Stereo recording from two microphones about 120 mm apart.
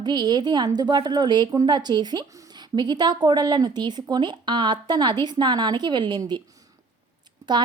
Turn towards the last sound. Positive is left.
turn(degrees=-35)  # may be behind; listen again after turning